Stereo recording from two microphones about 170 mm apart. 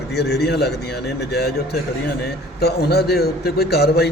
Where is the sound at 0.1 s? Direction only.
75° left (ahead or behind).